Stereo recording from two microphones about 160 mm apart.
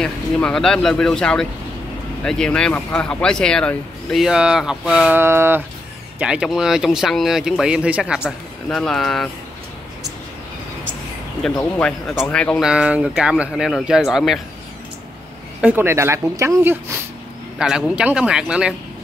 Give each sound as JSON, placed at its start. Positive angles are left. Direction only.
{"t": 0.0, "sound": "speech", "side_deg": 5}
{"t": 11.5, "sound": "speech", "side_deg": 10}
{"t": 12.6, "sound": "speech", "side_deg": -5}
{"t": 15.6, "sound": "speech", "side_deg": -15}
{"t": 17.6, "sound": "speech", "side_deg": -5}